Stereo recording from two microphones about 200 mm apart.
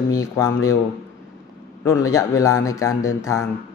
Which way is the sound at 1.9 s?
15° left (ahead or behind).